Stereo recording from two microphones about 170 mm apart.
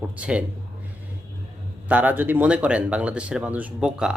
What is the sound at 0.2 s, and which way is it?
Speech, 5° right (ahead or behind).